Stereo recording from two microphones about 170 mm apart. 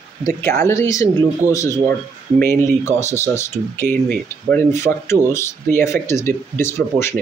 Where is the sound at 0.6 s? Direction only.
20° left (ahead or behind).